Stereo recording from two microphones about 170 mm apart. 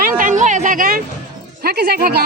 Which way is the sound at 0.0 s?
50° right (ahead or behind).